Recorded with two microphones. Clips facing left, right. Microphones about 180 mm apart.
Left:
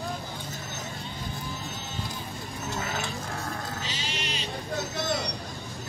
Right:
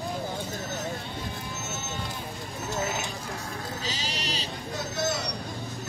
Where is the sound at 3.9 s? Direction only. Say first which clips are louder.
Right 1 dB; 40° right (ahead or behind).